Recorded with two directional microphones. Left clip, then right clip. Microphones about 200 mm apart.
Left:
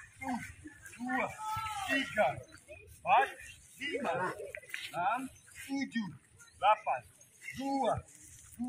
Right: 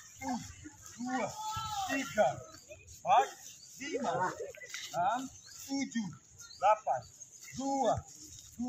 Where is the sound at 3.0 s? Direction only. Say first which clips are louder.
Even; 15° right (ahead or behind).